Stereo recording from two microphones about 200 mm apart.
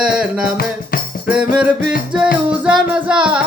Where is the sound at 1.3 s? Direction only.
5° right (ahead or behind).